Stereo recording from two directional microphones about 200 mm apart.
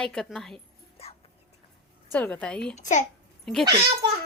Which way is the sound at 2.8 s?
35° left (ahead or behind).